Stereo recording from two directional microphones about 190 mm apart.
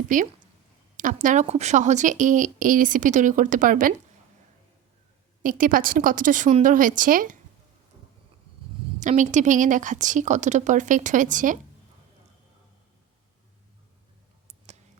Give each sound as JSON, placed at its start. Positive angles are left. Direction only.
{"t": 0.1, "sound": "speech", "side_deg": -45}
{"t": 5.4, "sound": "speech", "side_deg": -45}
{"t": 9.0, "sound": "speech", "side_deg": -40}